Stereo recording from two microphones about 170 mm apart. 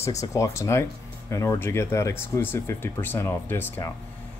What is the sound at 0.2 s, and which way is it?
Speech, 20° left (ahead or behind).